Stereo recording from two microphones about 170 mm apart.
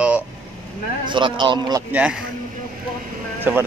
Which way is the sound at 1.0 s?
30° right (ahead or behind).